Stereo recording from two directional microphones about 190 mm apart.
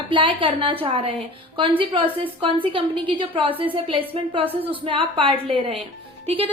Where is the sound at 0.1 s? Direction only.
25° right (ahead or behind).